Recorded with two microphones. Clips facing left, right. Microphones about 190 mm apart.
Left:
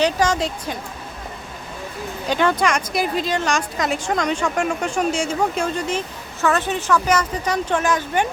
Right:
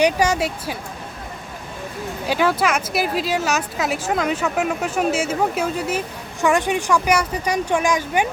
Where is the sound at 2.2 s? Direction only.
5° right (ahead or behind).